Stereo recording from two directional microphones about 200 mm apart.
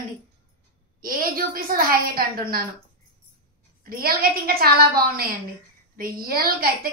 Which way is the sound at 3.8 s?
50° right (ahead or behind).